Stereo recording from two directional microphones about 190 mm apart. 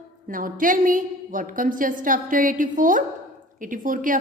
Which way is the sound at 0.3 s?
45° right (ahead or behind).